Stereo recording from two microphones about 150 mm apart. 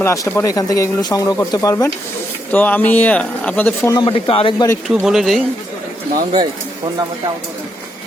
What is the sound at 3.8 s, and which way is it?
Speech, 30° left (ahead or behind).